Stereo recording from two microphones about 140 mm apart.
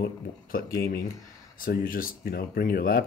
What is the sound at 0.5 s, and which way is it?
Speech, 90° left.